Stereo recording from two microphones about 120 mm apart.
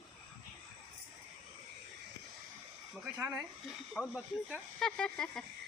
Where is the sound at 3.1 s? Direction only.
20° right (ahead or behind).